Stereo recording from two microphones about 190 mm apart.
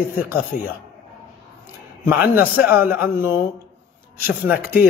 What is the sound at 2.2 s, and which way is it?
A man's voice, 10° right (ahead or behind).